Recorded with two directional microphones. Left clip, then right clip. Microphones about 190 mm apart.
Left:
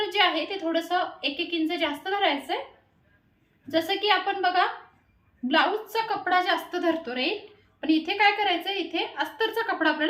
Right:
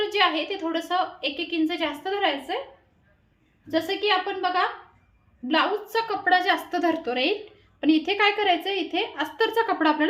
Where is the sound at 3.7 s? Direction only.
30° right (ahead or behind).